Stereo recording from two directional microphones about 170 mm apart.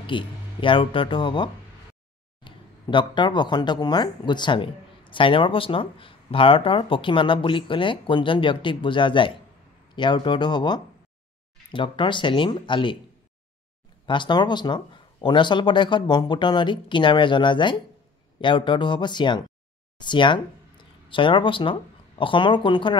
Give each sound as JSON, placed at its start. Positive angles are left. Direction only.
{"t": 0.0, "sound": "speech", "side_deg": 30}
{"t": 14.0, "sound": "speech", "side_deg": 30}